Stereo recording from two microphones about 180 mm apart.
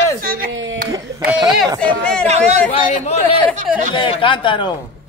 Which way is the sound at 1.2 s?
Centre (ahead or behind).